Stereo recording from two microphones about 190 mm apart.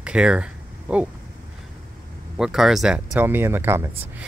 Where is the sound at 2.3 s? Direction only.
Centre (ahead or behind).